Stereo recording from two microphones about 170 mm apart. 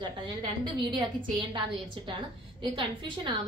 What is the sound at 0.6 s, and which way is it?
Speech, 30° right (ahead or behind).